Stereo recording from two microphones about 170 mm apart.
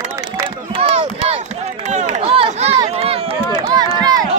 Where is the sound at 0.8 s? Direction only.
35° right (ahead or behind).